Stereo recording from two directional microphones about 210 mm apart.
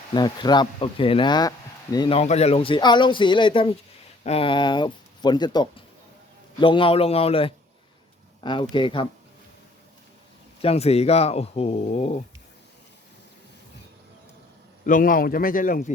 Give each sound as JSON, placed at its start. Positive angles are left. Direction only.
{"t": 0.1, "sound": "speech", "side_deg": 20}
{"t": 10.6, "sound": "speech", "side_deg": 30}
{"t": 14.8, "sound": "speech", "side_deg": 40}